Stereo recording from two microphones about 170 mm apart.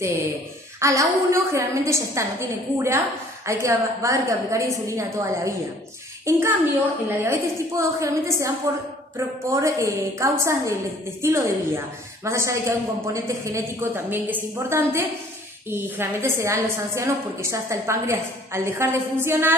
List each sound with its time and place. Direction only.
0.7 s a woman's voice: 20° right (ahead or behind)